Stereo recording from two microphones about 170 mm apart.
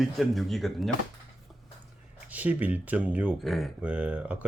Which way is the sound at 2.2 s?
10° right (ahead or behind).